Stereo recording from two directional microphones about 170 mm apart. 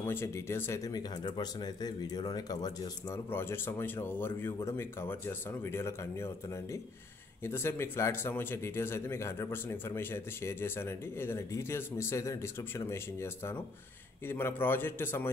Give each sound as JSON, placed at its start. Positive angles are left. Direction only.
{"t": 0.0, "sound": "speech", "side_deg": 15}